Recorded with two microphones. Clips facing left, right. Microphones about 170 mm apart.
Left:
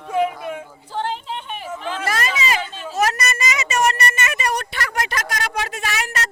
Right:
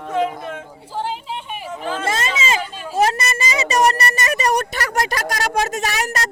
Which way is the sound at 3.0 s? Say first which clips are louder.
Right 3 dB; 30° right (ahead or behind).